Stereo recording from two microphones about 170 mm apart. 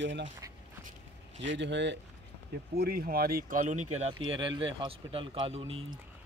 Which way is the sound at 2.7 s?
65° right (ahead or behind).